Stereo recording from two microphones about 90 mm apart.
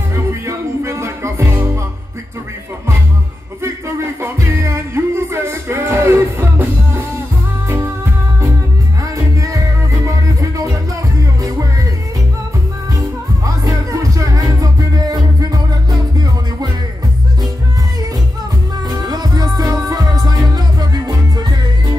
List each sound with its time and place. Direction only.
0.1 s music: 35° right (ahead or behind)
3.6 s music: 30° right (ahead or behind)
12.9 s music: 40° right (ahead or behind)
18.9 s music: 45° right (ahead or behind)